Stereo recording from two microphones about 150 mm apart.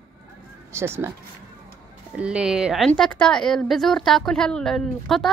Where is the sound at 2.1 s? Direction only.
5° right (ahead or behind).